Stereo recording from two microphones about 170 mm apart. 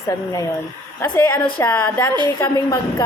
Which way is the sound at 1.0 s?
15° left (ahead or behind).